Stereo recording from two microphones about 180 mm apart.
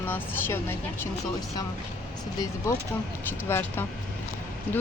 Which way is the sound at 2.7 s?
15° left (ahead or behind).